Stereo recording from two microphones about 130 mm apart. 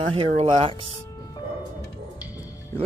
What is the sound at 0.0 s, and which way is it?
Speech, 45° right (ahead or behind).